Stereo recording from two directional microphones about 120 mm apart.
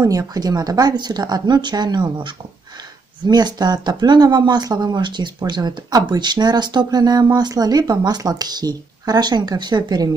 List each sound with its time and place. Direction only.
0.0 s speech: 30° right (ahead or behind)